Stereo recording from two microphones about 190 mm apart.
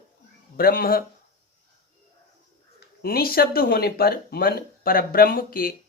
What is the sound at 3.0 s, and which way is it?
Speech, 50° left (ahead or behind).